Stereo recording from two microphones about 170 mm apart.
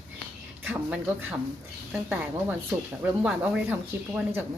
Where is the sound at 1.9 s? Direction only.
10° right (ahead or behind).